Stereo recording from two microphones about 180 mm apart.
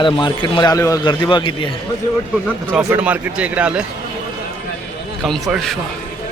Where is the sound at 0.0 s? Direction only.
25° left (ahead or behind).